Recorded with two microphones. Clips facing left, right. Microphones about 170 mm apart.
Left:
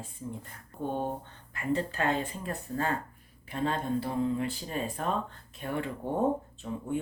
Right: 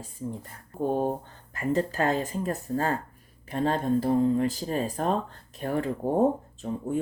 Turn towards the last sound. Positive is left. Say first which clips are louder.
# right 4 dB
turn(degrees=-40)  # may be behind; listen again after turning